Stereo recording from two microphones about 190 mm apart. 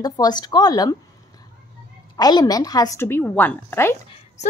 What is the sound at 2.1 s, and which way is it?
A woman's voice, 20° left (ahead or behind).